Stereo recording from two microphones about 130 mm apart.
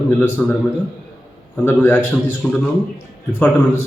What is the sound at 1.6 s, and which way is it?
Speech, 15° left (ahead or behind).